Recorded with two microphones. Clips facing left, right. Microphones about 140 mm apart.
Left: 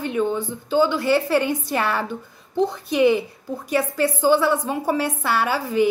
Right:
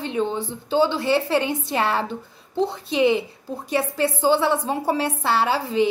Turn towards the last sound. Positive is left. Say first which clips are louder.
# even
turn(degrees=-25)  # may be behind; listen again after turning